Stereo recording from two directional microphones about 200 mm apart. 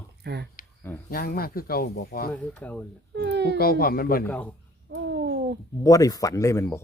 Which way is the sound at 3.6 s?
50° left (ahead or behind).